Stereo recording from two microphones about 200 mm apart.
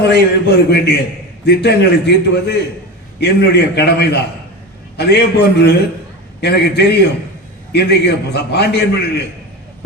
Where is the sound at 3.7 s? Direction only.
55° left (ahead or behind).